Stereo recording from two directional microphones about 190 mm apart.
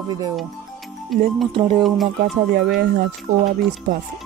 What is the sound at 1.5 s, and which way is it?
Speech, 30° right (ahead or behind).